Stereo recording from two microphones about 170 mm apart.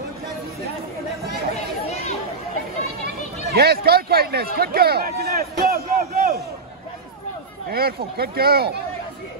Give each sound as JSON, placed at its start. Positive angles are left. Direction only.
{"t": 1.5, "sound": "chatter", "side_deg": 40}
{"t": 3.4, "sound": "a man's voice", "side_deg": -70}
{"t": 4.6, "sound": "a sound", "side_deg": -65}
{"t": 7.7, "sound": "a man's voice", "side_deg": -65}